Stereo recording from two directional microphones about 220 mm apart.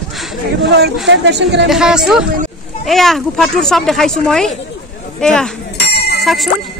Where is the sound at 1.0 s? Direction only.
50° right (ahead or behind).